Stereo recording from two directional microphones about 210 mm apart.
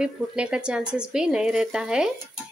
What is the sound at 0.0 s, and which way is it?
A woman's voice, 5° right (ahead or behind).